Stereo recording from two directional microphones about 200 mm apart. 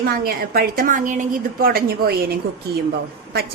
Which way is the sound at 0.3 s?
50° right (ahead or behind).